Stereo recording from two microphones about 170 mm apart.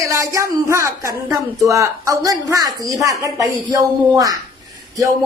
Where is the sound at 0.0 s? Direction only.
20° right (ahead or behind).